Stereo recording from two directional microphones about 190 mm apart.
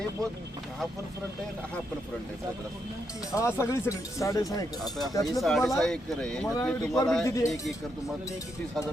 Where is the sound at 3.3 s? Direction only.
15° left (ahead or behind).